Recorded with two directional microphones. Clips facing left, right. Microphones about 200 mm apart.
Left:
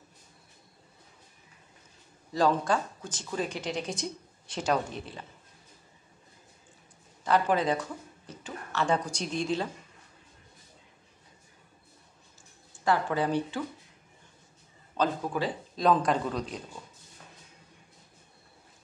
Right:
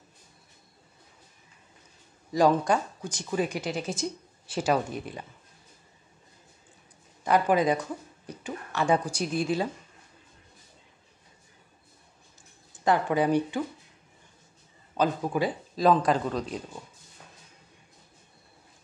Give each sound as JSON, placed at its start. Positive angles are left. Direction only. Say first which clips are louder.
{"t": 2.3, "sound": "speech", "louder": "right 3 dB", "side_deg": -15}
{"t": 7.2, "sound": "speech", "louder": "right 3 dB", "side_deg": -10}
{"t": 12.8, "sound": "speech", "louder": "right 3 dB", "side_deg": -15}
{"t": 15.0, "sound": "speech", "louder": "right 3 dB", "side_deg": -10}